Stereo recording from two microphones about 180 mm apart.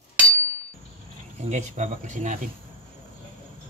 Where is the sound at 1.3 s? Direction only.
40° right (ahead or behind).